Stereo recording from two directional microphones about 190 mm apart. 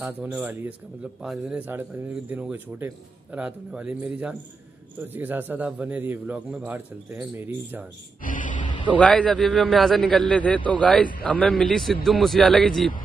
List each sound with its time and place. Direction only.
0.0 s speech: 5° right (ahead or behind)
8.2 s a sound: 45° left (ahead or behind)
8.5 s vehicle: 25° left (ahead or behind)
8.9 s a man's voice: 5° left (ahead or behind)